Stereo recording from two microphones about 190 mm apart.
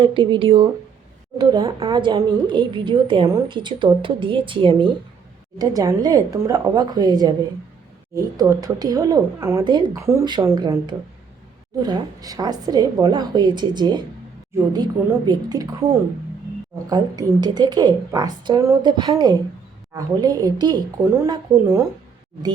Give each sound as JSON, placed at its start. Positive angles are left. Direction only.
{"t": 0.0, "sound": "a woman's voice", "side_deg": -25}